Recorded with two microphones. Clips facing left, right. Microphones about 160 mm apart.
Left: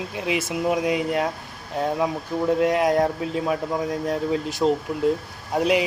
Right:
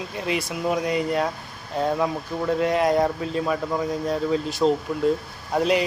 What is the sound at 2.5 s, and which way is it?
Speech, 5° left (ahead or behind).